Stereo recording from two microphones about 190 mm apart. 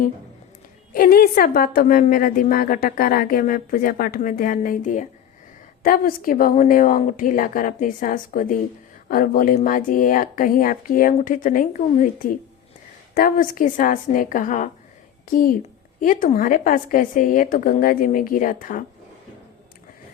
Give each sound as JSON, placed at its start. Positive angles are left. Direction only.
{"t": 0.9, "sound": "a woman's voice", "side_deg": 50}